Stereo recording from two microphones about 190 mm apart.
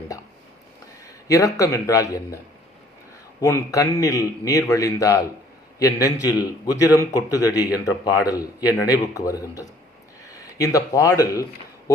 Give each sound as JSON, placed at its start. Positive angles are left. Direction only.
{"t": 1.3, "sound": "a man's voice", "side_deg": 15}
{"t": 3.4, "sound": "a man's voice", "side_deg": 15}